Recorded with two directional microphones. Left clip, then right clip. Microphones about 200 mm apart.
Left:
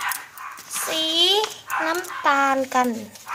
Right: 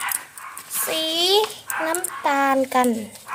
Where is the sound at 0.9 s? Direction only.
15° right (ahead or behind).